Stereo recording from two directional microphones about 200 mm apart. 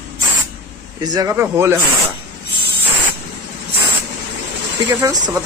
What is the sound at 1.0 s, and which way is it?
Speech, 20° right (ahead or behind).